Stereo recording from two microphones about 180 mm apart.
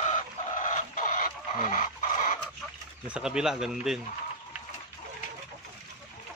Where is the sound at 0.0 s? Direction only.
45° left (ahead or behind).